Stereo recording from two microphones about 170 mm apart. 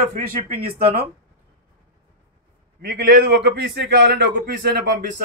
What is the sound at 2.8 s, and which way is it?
A man's voice, 75° right (ahead or behind).